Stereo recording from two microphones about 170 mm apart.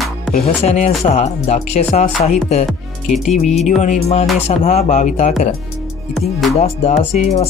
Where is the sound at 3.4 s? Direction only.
Centre (ahead or behind).